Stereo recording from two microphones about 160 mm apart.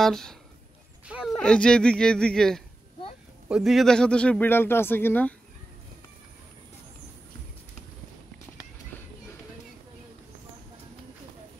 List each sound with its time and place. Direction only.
0.0 s a man's voice: 5° left (ahead or behind)